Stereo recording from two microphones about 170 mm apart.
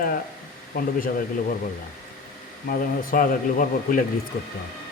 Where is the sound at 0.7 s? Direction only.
55° left (ahead or behind).